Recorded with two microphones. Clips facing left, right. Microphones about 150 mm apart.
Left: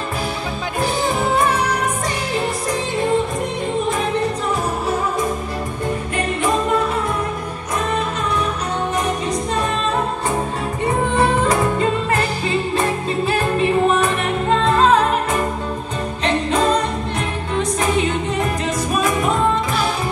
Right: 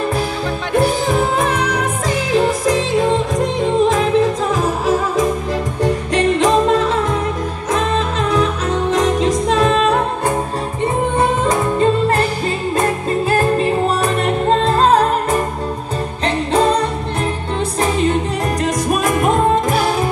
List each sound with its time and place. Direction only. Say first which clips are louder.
2.7 s music: right 4 dB; 90° right
6.1 s music: right 7 dB; 90° right
8.9 s music: right 6 dB; 90° right
11.1 s music: even; 20° right (ahead or behind)
13.3 s music: right 2 dB; 40° right (ahead or behind)
18.9 s music: right 3 dB; 50° right (ahead or behind)